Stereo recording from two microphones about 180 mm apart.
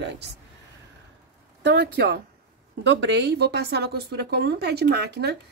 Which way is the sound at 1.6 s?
65° right (ahead or behind).